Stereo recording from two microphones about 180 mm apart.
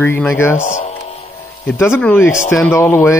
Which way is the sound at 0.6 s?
40° left (ahead or behind).